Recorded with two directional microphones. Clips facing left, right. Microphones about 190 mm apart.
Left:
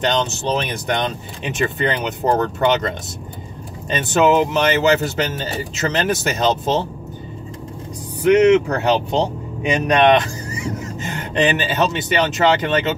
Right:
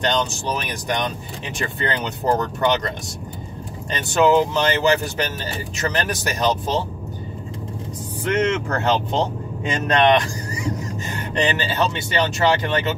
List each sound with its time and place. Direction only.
0.0 s speech: 20° left (ahead or behind)
3.9 s speech: 20° left (ahead or behind)
8.2 s speech: 15° left (ahead or behind)